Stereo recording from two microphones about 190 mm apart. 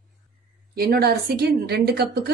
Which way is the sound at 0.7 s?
55° right (ahead or behind).